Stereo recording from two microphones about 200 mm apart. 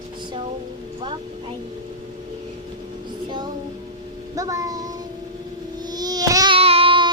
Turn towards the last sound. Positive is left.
turn(degrees=-25)  # may be behind; listen again after turning